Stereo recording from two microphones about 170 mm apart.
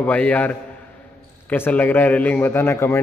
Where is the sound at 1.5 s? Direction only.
10° left (ahead or behind).